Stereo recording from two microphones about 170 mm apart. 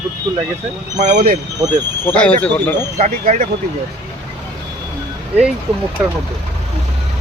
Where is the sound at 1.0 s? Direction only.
45° right (ahead or behind).